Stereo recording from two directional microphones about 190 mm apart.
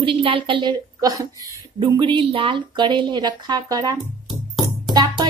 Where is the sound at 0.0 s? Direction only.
25° right (ahead or behind).